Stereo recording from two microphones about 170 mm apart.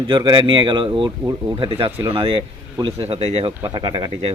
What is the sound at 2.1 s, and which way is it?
Speech, 30° right (ahead or behind).